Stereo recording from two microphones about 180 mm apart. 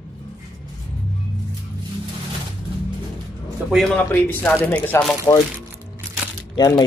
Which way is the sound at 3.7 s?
5° left (ahead or behind).